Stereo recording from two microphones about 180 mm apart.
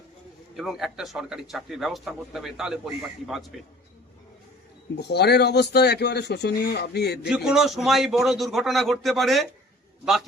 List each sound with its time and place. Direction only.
0.5 s speech: centre (ahead or behind)
4.9 s speech: 65° left (ahead or behind)
7.3 s speech: 5° right (ahead or behind)